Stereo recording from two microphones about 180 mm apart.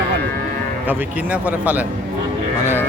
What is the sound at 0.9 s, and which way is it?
Speech, 10° right (ahead or behind).